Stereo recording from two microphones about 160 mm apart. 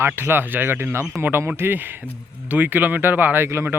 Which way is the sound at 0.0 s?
15° right (ahead or behind).